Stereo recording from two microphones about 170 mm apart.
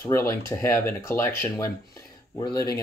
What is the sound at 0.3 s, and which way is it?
Speech, 15° left (ahead or behind).